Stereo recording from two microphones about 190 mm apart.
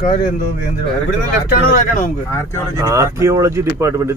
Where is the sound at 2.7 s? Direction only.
15° right (ahead or behind).